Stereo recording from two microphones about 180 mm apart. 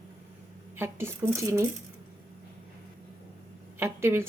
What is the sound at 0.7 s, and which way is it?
Speech, 15° right (ahead or behind).